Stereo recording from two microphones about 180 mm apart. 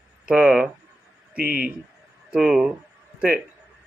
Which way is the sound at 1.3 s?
50° right (ahead or behind).